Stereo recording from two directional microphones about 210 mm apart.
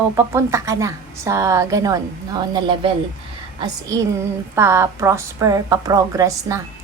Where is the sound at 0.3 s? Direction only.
15° right (ahead or behind).